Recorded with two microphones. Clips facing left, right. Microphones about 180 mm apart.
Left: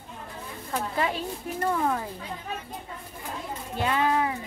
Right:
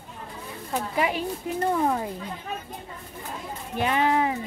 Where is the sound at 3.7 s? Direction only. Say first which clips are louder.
Right 2 dB; 20° right (ahead or behind).